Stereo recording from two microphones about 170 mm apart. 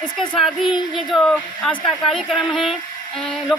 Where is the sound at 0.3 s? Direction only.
Centre (ahead or behind).